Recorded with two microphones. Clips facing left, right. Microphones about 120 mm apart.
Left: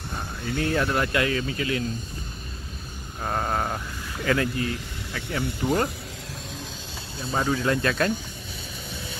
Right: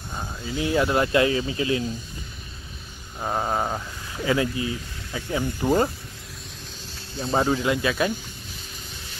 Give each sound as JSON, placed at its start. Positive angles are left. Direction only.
{"t": 0.4, "sound": "speech", "side_deg": 60}
{"t": 0.7, "sound": "speech", "side_deg": -20}
{"t": 3.2, "sound": "speech", "side_deg": -10}
{"t": 7.2, "sound": "speech", "side_deg": -25}
{"t": 7.6, "sound": "speech", "side_deg": -10}